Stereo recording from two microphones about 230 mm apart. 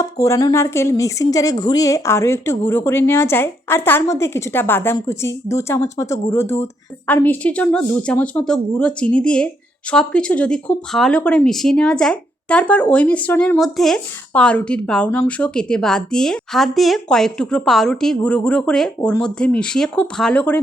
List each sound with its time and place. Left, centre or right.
0.0 s a woman's voice: centre